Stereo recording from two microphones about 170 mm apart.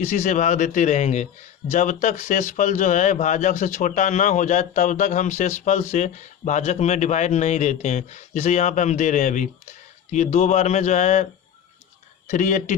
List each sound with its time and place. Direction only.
0.0 s speech: 45° left (ahead or behind)
12.3 s speech: 45° left (ahead or behind)